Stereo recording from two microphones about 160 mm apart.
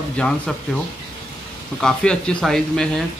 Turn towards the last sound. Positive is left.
turn(degrees=0)  # may be behind; listen again after turning